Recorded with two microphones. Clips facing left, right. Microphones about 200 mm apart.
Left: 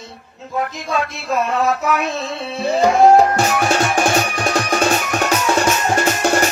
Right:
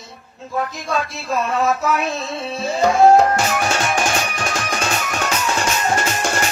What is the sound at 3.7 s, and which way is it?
Music, 35° left (ahead or behind).